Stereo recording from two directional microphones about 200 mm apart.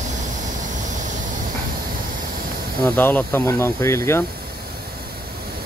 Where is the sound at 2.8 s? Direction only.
10° left (ahead or behind).